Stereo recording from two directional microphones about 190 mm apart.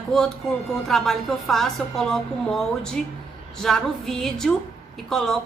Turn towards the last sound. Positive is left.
turn(degrees=0)  # may be behind; listen again after turning